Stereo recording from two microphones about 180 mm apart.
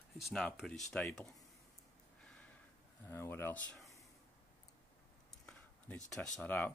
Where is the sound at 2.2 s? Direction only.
5° left (ahead or behind).